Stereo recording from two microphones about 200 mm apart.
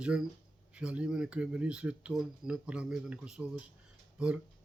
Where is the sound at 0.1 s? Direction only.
5° right (ahead or behind).